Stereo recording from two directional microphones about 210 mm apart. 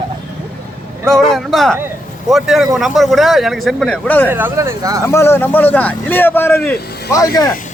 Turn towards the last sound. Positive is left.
turn(degrees=15)  # may be behind; listen again after turning